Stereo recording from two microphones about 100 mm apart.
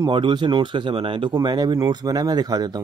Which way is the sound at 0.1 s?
50° right (ahead or behind).